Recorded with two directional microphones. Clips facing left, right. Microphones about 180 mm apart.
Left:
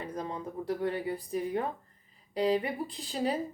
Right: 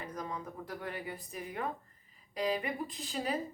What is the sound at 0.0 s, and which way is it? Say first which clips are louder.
Speech: left 4 dB; 30° left (ahead or behind).